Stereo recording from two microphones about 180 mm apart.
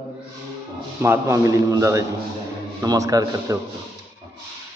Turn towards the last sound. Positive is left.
turn(degrees=-20)  # may be behind; listen again after turning